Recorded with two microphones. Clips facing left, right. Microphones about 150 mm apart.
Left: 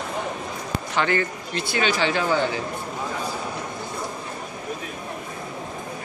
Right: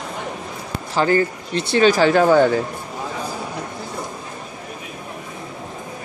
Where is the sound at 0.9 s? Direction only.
35° right (ahead or behind).